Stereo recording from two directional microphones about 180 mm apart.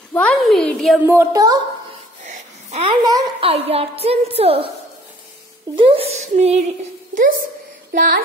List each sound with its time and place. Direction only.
0.1 s a woman's voice: 5° left (ahead or behind)
1.0 s speech: 15° right (ahead or behind)
2.2 s a woman's voice: 35° right (ahead or behind)
5.8 s speech: 30° right (ahead or behind)
7.9 s a child's voice: 50° right (ahead or behind)